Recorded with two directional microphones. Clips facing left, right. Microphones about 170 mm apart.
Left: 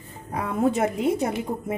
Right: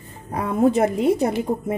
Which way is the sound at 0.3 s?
35° right (ahead or behind).